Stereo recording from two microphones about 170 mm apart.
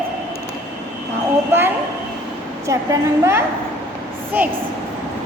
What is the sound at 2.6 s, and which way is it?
Speech, 15° right (ahead or behind).